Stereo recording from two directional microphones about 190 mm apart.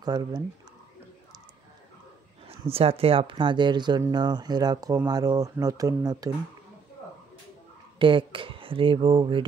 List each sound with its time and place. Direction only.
0.0 s speech: 20° right (ahead or behind)
2.4 s speech: 30° right (ahead or behind)
8.0 s speech: 25° right (ahead or behind)